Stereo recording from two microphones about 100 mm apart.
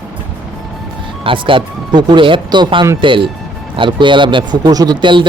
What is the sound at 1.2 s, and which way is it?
A man's voice, 60° right (ahead or behind).